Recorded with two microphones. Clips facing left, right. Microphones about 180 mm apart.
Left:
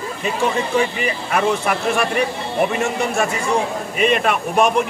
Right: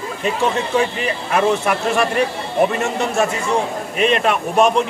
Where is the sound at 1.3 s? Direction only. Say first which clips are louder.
Right 2 dB; centre (ahead or behind).